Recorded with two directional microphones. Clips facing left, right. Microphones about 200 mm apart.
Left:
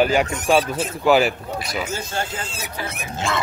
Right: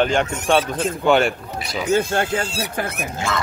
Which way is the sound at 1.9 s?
60° right (ahead or behind).